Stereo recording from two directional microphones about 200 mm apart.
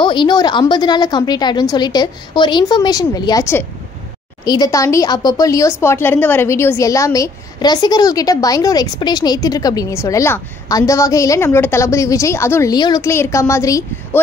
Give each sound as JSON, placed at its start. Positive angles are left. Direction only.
{"t": 0.0, "sound": "a woman's voice", "side_deg": 25}